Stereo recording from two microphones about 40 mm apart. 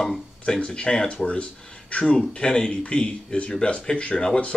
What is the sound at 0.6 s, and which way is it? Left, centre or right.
Speech, left.